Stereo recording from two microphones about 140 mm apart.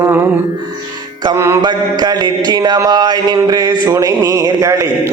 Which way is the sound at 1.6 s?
30° right (ahead or behind).